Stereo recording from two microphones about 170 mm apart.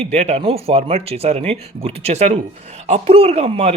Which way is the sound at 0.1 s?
40° right (ahead or behind).